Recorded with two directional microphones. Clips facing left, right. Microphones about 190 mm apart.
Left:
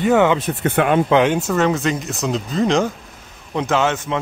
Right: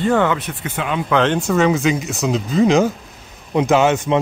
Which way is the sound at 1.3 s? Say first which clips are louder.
Right 2 dB; centre (ahead or behind).